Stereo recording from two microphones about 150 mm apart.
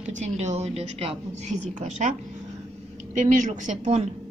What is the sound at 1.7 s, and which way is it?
A woman's voice, 55° right (ahead or behind).